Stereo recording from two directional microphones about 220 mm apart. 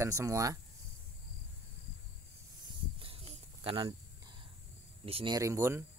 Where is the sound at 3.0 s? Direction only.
25° right (ahead or behind).